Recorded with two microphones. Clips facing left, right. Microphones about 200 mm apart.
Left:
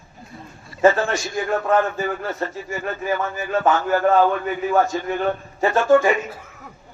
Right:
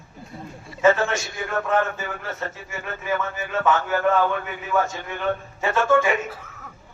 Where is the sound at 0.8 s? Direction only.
35° left (ahead or behind).